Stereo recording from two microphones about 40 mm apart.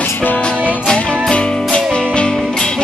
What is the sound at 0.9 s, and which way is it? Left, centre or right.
Music, left.